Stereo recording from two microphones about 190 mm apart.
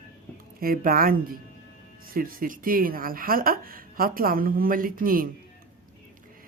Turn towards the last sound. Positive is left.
turn(degrees=-50)  # may be behind; listen again after turning